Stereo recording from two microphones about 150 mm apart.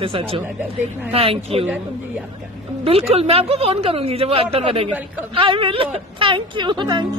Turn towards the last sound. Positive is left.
turn(degrees=-30)  # may be behind; listen again after turning